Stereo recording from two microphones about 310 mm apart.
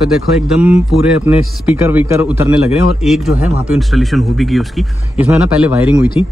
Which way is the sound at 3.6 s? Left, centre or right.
Centre.